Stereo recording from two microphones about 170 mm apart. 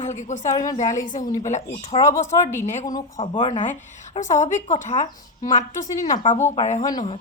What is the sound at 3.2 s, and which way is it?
Speech, 30° left (ahead or behind).